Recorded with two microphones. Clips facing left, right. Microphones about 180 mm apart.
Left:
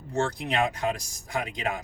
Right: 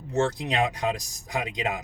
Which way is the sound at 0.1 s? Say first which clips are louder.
Right 2 dB; 20° right (ahead or behind).